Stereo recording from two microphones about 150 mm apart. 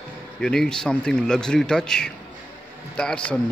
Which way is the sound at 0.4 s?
5° left (ahead or behind).